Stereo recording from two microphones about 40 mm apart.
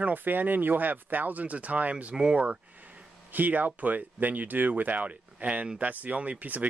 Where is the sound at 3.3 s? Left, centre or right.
Right.